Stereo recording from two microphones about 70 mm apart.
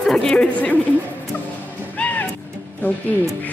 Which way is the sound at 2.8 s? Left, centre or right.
Left.